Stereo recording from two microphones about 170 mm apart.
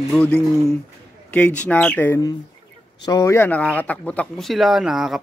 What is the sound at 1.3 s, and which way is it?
Speech, 10° left (ahead or behind).